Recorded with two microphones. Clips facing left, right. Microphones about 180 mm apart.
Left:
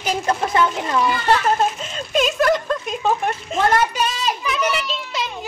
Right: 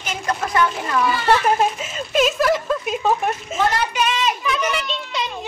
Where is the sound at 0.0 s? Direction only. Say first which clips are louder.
Left 4 dB; 35° left (ahead or behind).